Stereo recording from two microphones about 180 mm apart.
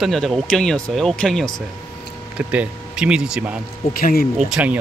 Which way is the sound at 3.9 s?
55° left (ahead or behind).